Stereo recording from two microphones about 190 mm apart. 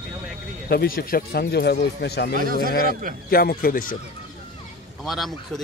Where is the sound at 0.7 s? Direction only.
50° left (ahead or behind).